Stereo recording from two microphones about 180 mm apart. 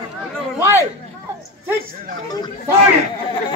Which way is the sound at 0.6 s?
15° right (ahead or behind).